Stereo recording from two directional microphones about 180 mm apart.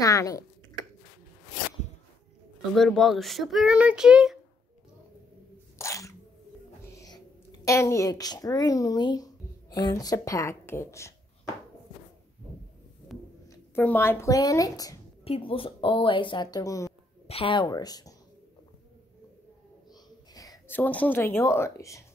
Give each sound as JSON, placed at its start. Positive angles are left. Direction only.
{"t": 0.0, "sound": "speech", "side_deg": 20}
{"t": 2.7, "sound": "speech", "side_deg": 0}
{"t": 5.8, "sound": "a sound", "side_deg": 15}
{"t": 6.9, "sound": "music", "side_deg": 20}
{"t": 7.6, "sound": "speech", "side_deg": 15}
{"t": 13.1, "sound": "a sound", "side_deg": 0}
{"t": 13.7, "sound": "speech", "side_deg": 10}
{"t": 15.2, "sound": "speech", "side_deg": 30}
{"t": 17.3, "sound": "speech", "side_deg": 30}
{"t": 20.3, "sound": "speech", "side_deg": 15}